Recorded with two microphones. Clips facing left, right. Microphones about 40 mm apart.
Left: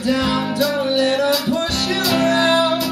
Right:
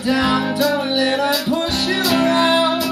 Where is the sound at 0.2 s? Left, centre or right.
Centre.